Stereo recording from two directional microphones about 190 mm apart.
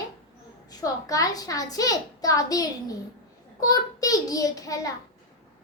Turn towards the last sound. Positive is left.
turn(degrees=20)  # may be behind; listen again after turning